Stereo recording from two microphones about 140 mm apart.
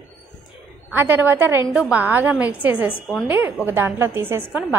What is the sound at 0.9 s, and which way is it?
A woman's voice, 15° right (ahead or behind).